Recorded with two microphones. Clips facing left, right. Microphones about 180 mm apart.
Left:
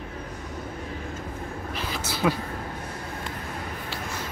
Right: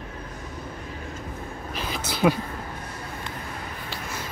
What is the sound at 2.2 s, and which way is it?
Speech, 15° right (ahead or behind).